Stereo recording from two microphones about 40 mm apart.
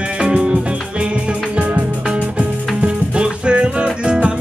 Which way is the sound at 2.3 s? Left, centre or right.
Right.